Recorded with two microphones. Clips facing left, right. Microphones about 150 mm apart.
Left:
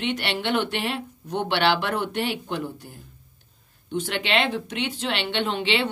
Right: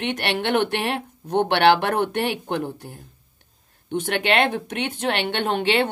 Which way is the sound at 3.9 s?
60° right (ahead or behind).